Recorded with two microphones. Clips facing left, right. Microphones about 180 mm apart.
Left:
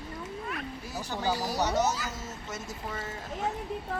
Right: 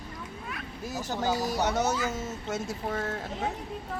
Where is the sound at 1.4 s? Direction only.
50° right (ahead or behind).